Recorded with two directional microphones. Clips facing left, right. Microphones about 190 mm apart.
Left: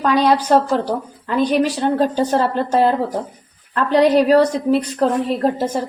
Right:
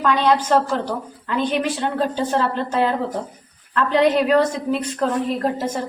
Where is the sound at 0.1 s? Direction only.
35° left (ahead or behind).